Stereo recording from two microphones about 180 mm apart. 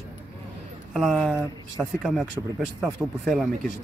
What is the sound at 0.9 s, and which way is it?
Speech, centre (ahead or behind).